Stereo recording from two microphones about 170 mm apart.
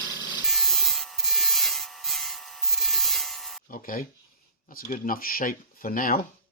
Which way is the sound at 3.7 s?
55° left (ahead or behind).